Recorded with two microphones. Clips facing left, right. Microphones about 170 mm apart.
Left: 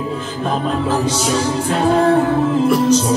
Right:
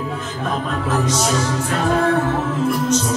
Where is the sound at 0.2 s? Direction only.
30° left (ahead or behind).